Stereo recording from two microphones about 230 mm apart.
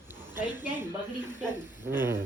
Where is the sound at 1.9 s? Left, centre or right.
Centre.